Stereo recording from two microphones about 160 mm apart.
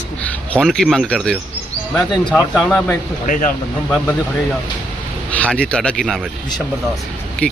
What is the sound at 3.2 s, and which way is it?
Speech, 55° left (ahead or behind).